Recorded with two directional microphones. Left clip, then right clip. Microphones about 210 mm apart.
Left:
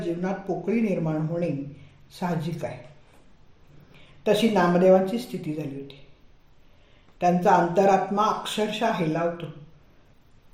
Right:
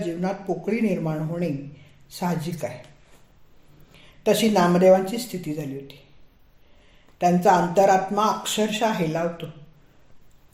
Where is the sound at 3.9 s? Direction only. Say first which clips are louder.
Right 2 dB; 55° right (ahead or behind).